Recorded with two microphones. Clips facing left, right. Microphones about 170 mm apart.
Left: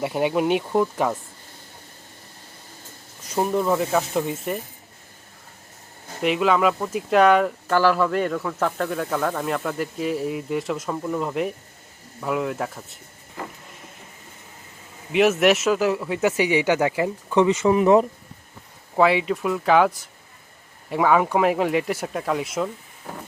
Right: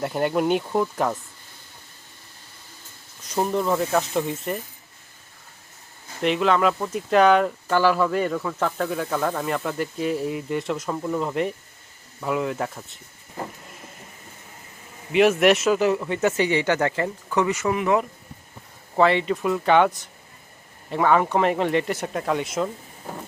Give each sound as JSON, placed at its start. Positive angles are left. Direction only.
{"t": 0.0, "sound": "speech", "side_deg": 5}
{"t": 3.2, "sound": "speech", "side_deg": 5}
{"t": 6.2, "sound": "speech", "side_deg": 5}
{"t": 15.1, "sound": "speech", "side_deg": 0}
{"t": 17.3, "sound": "speech", "side_deg": 25}
{"t": 18.9, "sound": "speech", "side_deg": 5}
{"t": 20.9, "sound": "speech", "side_deg": 5}